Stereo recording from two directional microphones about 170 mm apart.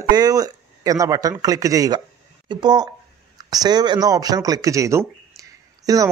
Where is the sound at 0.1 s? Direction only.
20° right (ahead or behind).